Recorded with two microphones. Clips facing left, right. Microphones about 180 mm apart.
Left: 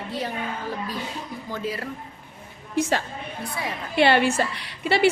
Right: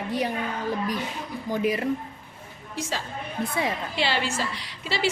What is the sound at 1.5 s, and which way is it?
Speech, 15° right (ahead or behind).